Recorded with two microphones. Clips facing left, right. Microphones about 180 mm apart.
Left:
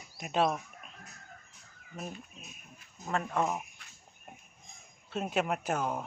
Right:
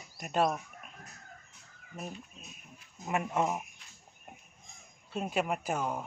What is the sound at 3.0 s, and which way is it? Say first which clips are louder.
Speech: right 1 dB; 15° right (ahead or behind).